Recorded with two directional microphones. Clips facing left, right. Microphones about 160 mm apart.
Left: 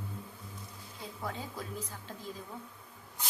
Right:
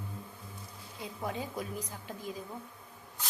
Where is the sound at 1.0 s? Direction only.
20° right (ahead or behind).